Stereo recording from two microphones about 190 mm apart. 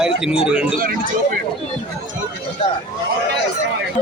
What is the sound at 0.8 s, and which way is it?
Speech, 45° right (ahead or behind).